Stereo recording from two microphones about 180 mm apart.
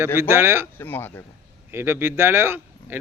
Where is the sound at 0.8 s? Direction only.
10° left (ahead or behind).